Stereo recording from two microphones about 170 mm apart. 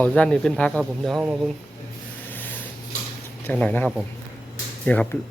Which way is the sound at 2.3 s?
10° left (ahead or behind).